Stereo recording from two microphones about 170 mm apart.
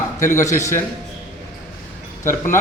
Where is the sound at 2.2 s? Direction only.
15° left (ahead or behind).